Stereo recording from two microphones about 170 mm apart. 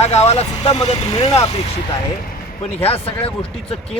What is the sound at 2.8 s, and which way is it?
Speech, 35° left (ahead or behind).